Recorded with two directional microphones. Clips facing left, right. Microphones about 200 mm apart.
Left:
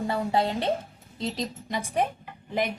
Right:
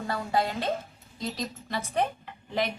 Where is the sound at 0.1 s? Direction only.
20° left (ahead or behind).